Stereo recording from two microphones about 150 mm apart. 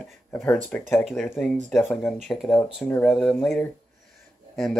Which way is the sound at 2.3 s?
5° left (ahead or behind).